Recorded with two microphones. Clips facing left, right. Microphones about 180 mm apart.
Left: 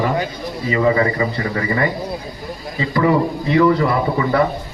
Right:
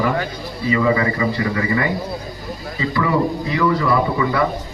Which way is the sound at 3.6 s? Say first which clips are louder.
Left 1 dB; 30° left (ahead or behind).